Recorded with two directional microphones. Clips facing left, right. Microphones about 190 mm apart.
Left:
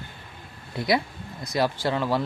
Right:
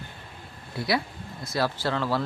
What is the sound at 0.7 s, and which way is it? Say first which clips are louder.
A man's voice: left 3 dB; 20° left (ahead or behind).